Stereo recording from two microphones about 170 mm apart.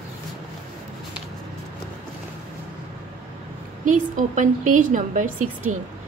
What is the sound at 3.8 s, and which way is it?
A woman's voice, 50° right (ahead or behind).